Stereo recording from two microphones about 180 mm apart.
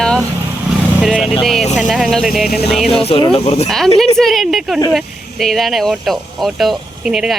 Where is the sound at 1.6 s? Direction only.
40° left (ahead or behind).